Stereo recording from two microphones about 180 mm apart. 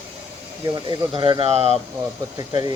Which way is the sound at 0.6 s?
25° right (ahead or behind).